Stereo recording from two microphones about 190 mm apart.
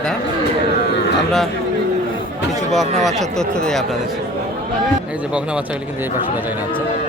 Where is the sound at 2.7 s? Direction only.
Centre (ahead or behind).